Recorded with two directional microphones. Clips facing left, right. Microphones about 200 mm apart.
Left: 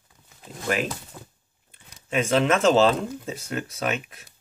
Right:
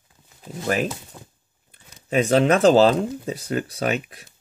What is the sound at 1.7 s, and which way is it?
Speech, 40° right (ahead or behind).